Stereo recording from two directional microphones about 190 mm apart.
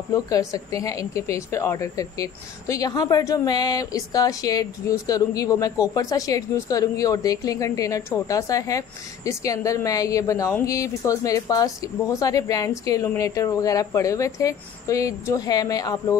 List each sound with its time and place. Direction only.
0.1 s speech: 20° left (ahead or behind)